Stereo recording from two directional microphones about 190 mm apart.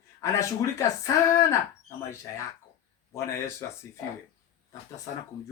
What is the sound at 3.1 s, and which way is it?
Speech, 15° left (ahead or behind).